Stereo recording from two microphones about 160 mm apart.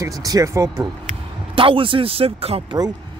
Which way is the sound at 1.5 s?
35° right (ahead or behind).